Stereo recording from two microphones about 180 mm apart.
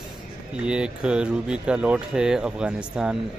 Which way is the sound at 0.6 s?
5° right (ahead or behind).